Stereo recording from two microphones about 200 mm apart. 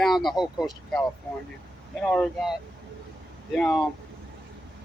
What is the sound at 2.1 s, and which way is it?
Speech, centre (ahead or behind).